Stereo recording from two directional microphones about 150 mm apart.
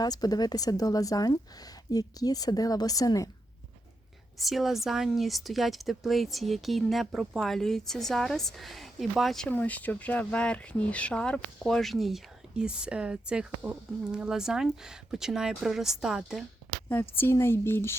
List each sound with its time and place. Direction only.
0.0 s a woman's voice: 25° left (ahead or behind)
4.4 s speech: centre (ahead or behind)
16.9 s speech: 15° left (ahead or behind)